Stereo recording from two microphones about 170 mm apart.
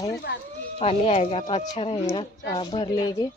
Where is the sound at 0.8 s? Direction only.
35° left (ahead or behind).